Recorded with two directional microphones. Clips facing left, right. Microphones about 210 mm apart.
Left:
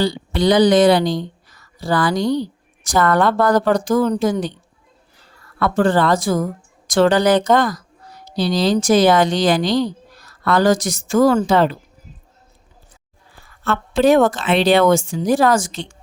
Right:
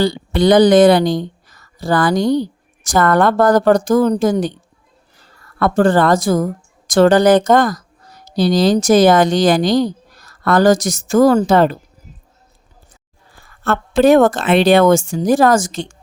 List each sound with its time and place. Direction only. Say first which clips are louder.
0.0 s speech: right 3 dB; 50° right (ahead or behind)
5.5 s a woman's voice: right 3 dB; 45° right (ahead or behind)
13.4 s a woman's voice: right 3 dB; 50° right (ahead or behind)